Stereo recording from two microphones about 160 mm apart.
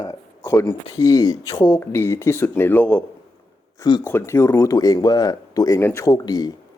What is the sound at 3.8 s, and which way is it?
Speech, 30° left (ahead or behind).